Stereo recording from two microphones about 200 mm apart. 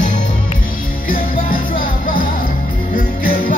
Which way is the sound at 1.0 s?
45° left (ahead or behind).